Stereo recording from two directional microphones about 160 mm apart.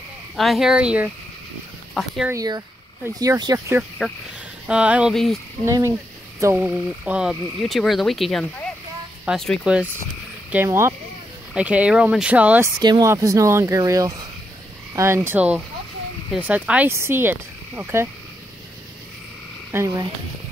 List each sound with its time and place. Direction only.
0.4 s frog: centre (ahead or behind)
2.2 s speech: 20° right (ahead or behind)
4.6 s speech: 5° right (ahead or behind)
5.1 s frog: 5° left (ahead or behind)
5.7 s speech: 20° right (ahead or behind)
6.4 s frog: 10° right (ahead or behind)
10.5 s speech: 15° right (ahead or behind)
12.7 s speech: 25° right (ahead or behind)
19.7 s speech: 20° right (ahead or behind)